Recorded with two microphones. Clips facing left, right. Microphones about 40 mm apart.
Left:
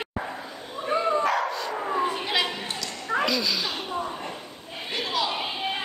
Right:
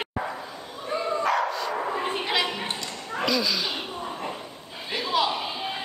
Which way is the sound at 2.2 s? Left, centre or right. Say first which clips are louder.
Even; centre.